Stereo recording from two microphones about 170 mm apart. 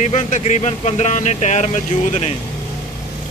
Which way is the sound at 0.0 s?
45° left (ahead or behind).